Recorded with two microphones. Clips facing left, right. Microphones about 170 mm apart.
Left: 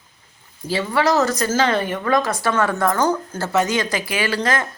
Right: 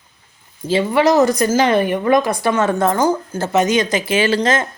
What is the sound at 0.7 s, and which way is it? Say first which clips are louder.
Speech: right 5 dB; 20° right (ahead or behind).